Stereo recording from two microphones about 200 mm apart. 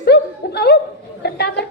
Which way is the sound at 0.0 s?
55° left (ahead or behind).